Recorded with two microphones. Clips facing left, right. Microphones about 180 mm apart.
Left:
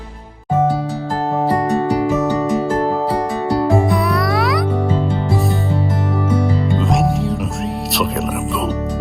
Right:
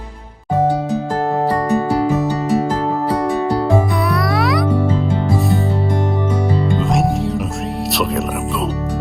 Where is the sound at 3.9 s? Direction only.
Centre (ahead or behind).